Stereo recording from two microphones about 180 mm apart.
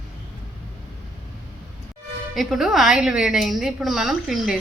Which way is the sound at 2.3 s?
Centre (ahead or behind).